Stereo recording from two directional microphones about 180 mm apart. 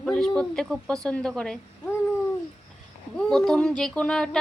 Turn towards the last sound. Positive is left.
turn(degrees=5)  # may be behind; listen again after turning